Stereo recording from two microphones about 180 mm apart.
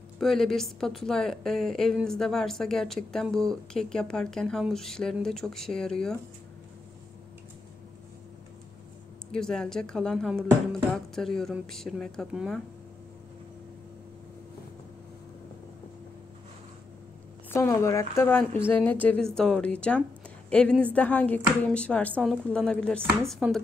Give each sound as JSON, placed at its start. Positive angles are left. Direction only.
{"t": 0.2, "sound": "a woman's voice", "side_deg": 0}
{"t": 9.3, "sound": "a woman's voice", "side_deg": 5}
{"t": 17.5, "sound": "a woman's voice", "side_deg": 15}